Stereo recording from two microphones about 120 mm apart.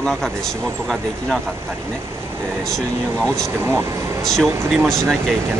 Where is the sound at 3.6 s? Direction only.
20° right (ahead or behind).